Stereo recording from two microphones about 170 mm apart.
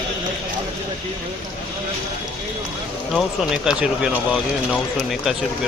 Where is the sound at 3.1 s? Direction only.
5° right (ahead or behind).